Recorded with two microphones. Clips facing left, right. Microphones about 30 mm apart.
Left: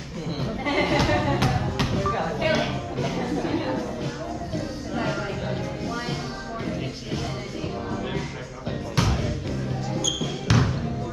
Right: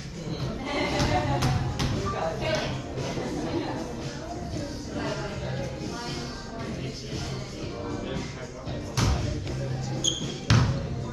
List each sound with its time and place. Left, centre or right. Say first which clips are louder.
0.7 s music: left 5 dB; left
8.9 s music: left 3 dB; centre
10.5 s basketball bounce: left 2 dB; centre